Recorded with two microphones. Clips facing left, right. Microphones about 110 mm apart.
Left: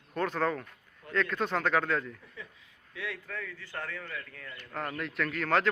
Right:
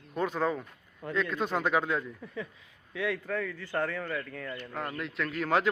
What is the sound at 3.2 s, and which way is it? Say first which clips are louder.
Speech: right 8 dB; 50° right (ahead or behind).